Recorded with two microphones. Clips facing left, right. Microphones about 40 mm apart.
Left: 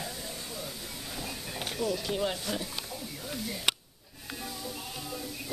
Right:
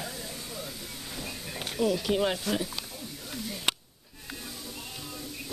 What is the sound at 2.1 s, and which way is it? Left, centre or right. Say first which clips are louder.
Speech: right 4 dB; right.